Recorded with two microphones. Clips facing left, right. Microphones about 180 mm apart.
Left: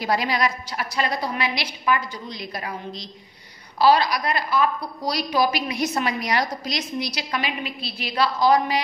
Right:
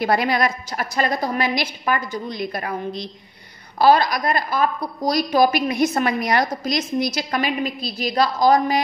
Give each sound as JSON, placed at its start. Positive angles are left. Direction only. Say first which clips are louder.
{"t": 0.0, "sound": "a woman's voice", "louder": "right 4 dB", "side_deg": -55}